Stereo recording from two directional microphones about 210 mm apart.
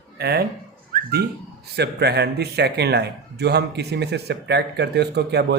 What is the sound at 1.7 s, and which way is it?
A man's voice, 50° right (ahead or behind).